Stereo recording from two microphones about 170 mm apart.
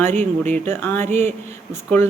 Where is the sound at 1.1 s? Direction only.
40° right (ahead or behind).